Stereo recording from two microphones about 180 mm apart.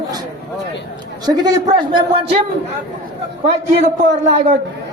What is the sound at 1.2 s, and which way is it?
A man's voice, 20° right (ahead or behind).